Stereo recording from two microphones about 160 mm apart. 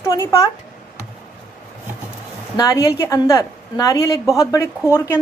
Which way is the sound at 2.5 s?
25° left (ahead or behind).